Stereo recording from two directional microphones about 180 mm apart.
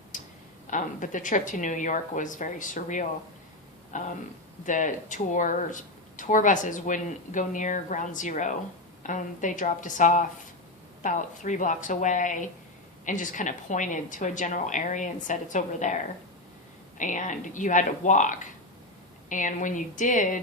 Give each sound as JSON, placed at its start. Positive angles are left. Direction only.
{"t": 0.1, "sound": "a sound", "side_deg": 45}
{"t": 0.7, "sound": "speech", "side_deg": 45}
{"t": 17.0, "sound": "speech", "side_deg": 45}